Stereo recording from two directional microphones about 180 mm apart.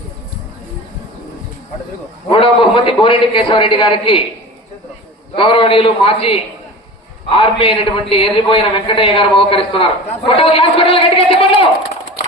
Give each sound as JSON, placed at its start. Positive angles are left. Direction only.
{"t": 2.3, "sound": "a man's voice", "side_deg": 30}
{"t": 5.4, "sound": "a man's voice", "side_deg": 30}